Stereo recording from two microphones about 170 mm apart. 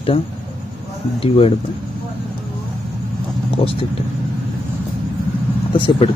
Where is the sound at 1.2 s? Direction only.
35° left (ahead or behind).